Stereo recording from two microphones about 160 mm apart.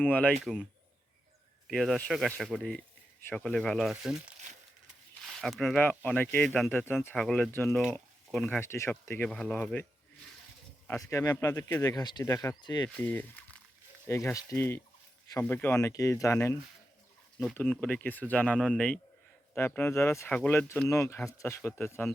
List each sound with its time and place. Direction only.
0.1 s speech: 10° left (ahead or behind)
8.6 s speech: 15° left (ahead or behind)
10.8 s speech: 20° left (ahead or behind)
13.0 s speech: 10° left (ahead or behind)
17.4 s speech: 5° left (ahead or behind)